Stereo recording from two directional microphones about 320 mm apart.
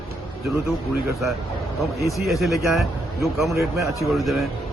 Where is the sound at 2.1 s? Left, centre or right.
Centre.